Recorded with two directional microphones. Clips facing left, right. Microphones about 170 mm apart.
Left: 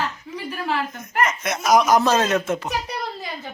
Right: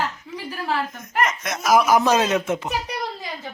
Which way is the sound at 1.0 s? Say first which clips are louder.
Left 2 dB; centre (ahead or behind).